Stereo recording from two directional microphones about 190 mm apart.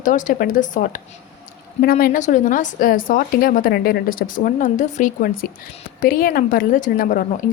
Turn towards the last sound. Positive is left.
turn(degrees=45)  # may be behind; listen again after turning